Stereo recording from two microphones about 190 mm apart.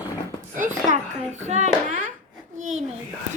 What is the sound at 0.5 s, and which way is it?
A woman's voice, 40° right (ahead or behind).